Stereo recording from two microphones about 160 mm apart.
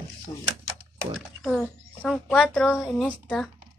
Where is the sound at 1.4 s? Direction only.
Centre (ahead or behind).